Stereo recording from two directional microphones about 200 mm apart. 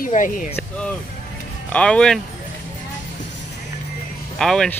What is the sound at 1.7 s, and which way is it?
Speech, 5° left (ahead or behind).